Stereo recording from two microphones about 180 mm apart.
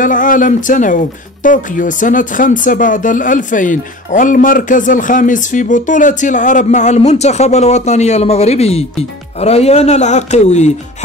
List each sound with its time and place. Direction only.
0.0 s speech: 45° left (ahead or behind)